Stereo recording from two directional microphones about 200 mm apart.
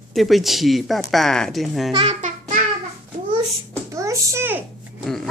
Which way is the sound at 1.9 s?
25° right (ahead or behind).